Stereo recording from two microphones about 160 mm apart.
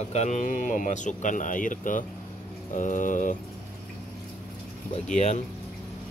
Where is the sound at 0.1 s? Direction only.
45° left (ahead or behind).